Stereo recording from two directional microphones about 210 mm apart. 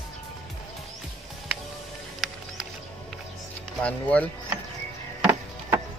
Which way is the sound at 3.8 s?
5° left (ahead or behind).